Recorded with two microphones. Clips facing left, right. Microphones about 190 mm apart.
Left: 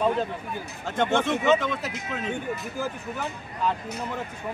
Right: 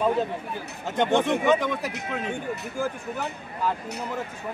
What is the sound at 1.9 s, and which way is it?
Speech, 65° right (ahead or behind).